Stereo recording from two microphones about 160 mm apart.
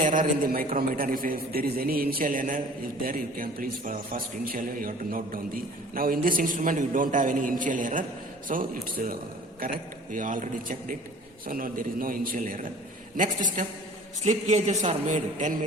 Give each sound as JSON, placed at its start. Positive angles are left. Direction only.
{"t": 0.0, "sound": "a man's voice", "side_deg": -55}
{"t": 14.3, "sound": "a man's voice", "side_deg": -45}